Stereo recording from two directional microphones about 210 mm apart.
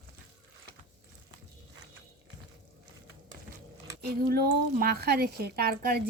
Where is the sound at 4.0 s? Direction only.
45° right (ahead or behind).